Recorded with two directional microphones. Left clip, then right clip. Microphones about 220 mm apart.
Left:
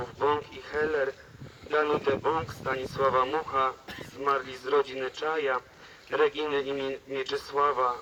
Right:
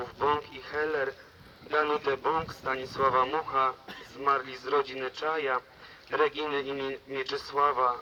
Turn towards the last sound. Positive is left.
turn(degrees=25)  # may be behind; listen again after turning